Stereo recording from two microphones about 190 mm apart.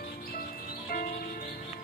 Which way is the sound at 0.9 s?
50° left (ahead or behind).